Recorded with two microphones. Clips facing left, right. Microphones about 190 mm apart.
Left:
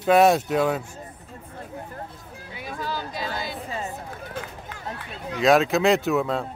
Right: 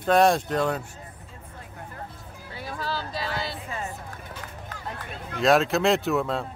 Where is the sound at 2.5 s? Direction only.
15° left (ahead or behind).